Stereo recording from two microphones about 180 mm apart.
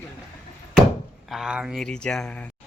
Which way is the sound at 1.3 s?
5° right (ahead or behind).